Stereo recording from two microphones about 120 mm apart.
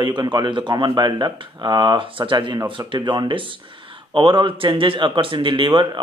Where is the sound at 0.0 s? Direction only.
40° right (ahead or behind).